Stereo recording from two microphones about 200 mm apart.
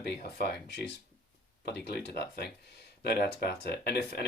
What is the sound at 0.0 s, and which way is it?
Speech, 50° left (ahead or behind).